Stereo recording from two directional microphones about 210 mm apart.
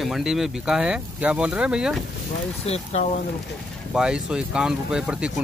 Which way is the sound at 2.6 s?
30° left (ahead or behind).